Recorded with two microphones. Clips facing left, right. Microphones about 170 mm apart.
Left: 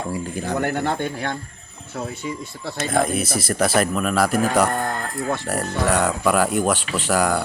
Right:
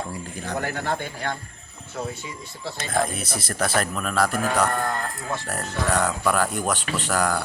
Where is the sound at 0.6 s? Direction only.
60° left (ahead or behind).